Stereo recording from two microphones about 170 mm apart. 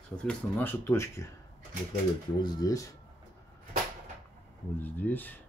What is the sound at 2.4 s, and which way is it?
Speech, 25° left (ahead or behind).